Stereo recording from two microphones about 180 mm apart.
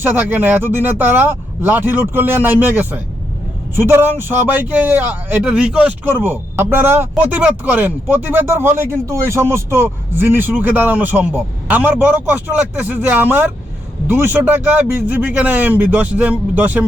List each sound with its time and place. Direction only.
0.0 s speech: 10° right (ahead or behind)